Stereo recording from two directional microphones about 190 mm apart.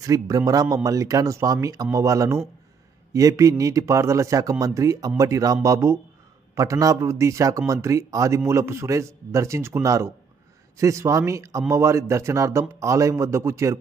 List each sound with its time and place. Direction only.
0.0 s speech: 20° right (ahead or behind)